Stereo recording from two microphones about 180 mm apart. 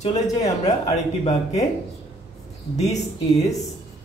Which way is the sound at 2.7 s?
40° left (ahead or behind).